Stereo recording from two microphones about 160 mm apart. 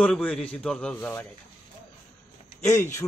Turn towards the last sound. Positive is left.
turn(degrees=20)  # may be behind; listen again after turning